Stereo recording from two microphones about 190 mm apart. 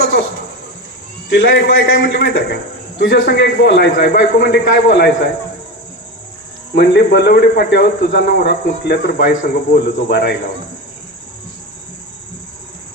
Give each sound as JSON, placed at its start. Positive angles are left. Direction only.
{"t": 0.0, "sound": "a sound", "side_deg": 75}
{"t": 1.3, "sound": "a man's voice", "side_deg": 65}
{"t": 6.7, "sound": "a man's voice", "side_deg": 65}
{"t": 9.3, "sound": "a man's voice", "side_deg": 45}
{"t": 10.1, "sound": "a man's voice", "side_deg": 60}